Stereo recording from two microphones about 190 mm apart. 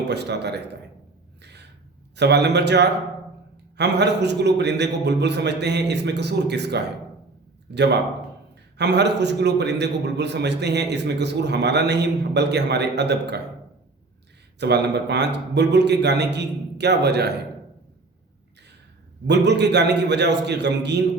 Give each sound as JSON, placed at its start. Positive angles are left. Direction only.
{"t": 0.1, "sound": "a man's voice", "side_deg": -60}
{"t": 1.4, "sound": "gasp", "side_deg": -65}
{"t": 2.1, "sound": "a man's voice", "side_deg": -65}
{"t": 14.6, "sound": "a man's voice", "side_deg": -60}
{"t": 19.3, "sound": "a man's voice", "side_deg": -65}